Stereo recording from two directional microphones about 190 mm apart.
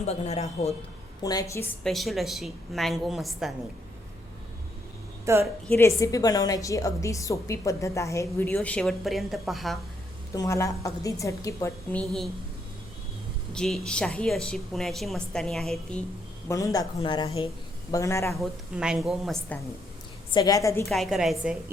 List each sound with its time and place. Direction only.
0.0 s a man's voice: 35° left (ahead or behind)
1.2 s a man's voice: 20° left (ahead or behind)
1.8 s a woman's voice: centre (ahead or behind)
5.2 s a woman's voice: 15° right (ahead or behind)
5.6 s a woman's voice: 10° left (ahead or behind)
10.3 s a woman's voice: 15° left (ahead or behind)
13.5 s a woman's voice: centre (ahead or behind)
16.5 s a man's voice: 15° left (ahead or behind)
18.3 s a woman's voice: centre (ahead or behind)
20.3 s a woman's voice: 20° left (ahead or behind)
20.9 s a woman's voice: centre (ahead or behind)